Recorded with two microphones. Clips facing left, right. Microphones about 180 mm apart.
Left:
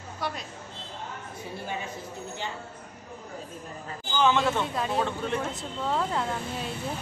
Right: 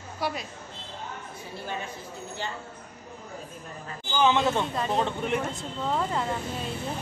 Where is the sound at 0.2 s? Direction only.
5° right (ahead or behind).